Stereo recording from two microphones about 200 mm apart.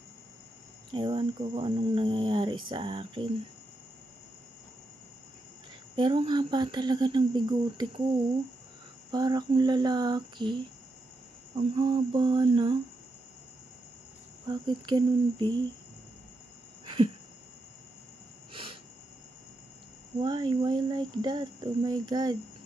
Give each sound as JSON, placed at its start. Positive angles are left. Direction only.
{"t": 0.9, "sound": "speech", "side_deg": -25}
{"t": 6.0, "sound": "speech", "side_deg": -25}
{"t": 9.1, "sound": "speech", "side_deg": -20}
{"t": 11.7, "sound": "speech", "side_deg": -20}
{"t": 14.4, "sound": "speech", "side_deg": -20}
{"t": 16.8, "sound": "a sound", "side_deg": -25}
{"t": 18.5, "sound": "a sound", "side_deg": -25}
{"t": 20.2, "sound": "speech", "side_deg": -20}